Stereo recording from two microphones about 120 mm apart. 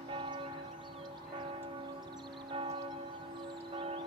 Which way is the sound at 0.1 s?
45° right (ahead or behind).